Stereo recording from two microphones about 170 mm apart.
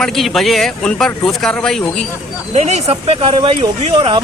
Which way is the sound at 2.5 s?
40° right (ahead or behind).